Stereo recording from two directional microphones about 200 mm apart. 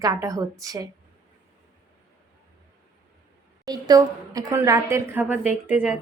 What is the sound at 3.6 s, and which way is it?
A woman's voice, 20° right (ahead or behind).